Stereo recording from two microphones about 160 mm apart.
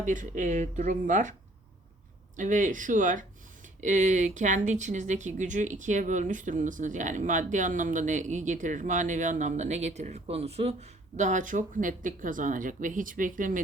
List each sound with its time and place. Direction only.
0.0 s speech: 50° right (ahead or behind)